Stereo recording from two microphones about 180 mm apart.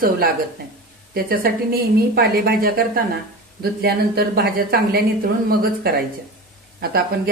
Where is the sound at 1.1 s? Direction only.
55° right (ahead or behind).